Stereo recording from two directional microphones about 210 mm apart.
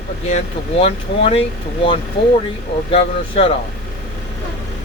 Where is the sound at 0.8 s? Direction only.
25° left (ahead or behind).